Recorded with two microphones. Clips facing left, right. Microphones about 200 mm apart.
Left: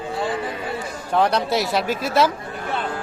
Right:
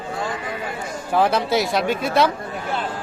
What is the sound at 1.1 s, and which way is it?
Speech, 5° right (ahead or behind).